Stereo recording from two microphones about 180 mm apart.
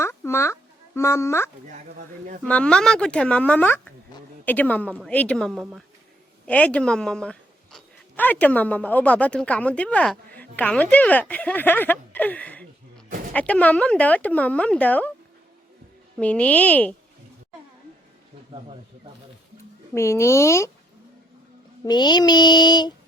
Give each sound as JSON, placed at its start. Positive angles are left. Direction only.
{"t": 0.0, "sound": "a sound", "side_deg": 15}
{"t": 2.4, "sound": "a woman's voice", "side_deg": 5}
{"t": 16.1, "sound": "a woman's voice", "side_deg": 5}
{"t": 19.9, "sound": "a woman's voice", "side_deg": 15}
{"t": 21.8, "sound": "child singing", "side_deg": 25}